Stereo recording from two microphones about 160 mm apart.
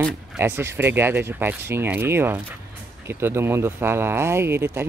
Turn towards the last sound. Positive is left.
turn(degrees=-15)  # may be behind; listen again after turning